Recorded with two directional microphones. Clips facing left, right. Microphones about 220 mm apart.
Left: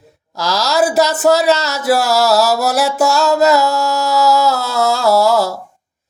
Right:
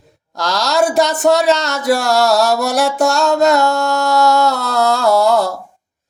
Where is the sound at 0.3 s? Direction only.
5° left (ahead or behind).